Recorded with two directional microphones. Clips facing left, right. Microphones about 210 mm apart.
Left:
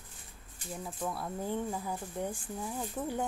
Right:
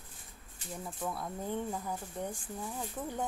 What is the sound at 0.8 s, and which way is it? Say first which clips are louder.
Speech: left 1 dB; centre (ahead or behind).